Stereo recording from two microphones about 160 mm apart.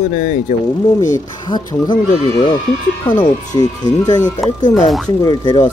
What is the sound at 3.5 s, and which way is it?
Speech, 25° left (ahead or behind).